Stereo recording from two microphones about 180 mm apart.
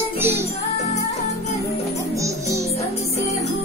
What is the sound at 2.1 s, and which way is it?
Music, 15° right (ahead or behind).